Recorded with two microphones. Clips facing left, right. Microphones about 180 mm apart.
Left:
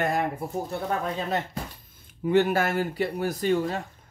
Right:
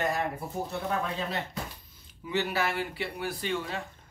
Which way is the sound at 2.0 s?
50° left (ahead or behind).